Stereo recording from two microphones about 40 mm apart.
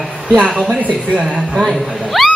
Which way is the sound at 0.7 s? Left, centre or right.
Right.